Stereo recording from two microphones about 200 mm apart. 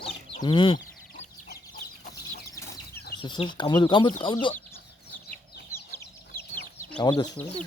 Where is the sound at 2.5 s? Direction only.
15° left (ahead or behind).